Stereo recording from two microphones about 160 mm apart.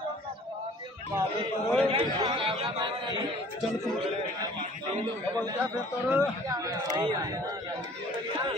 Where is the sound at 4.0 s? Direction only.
30° right (ahead or behind).